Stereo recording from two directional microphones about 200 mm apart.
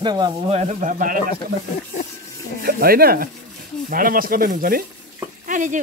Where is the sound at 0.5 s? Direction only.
35° right (ahead or behind).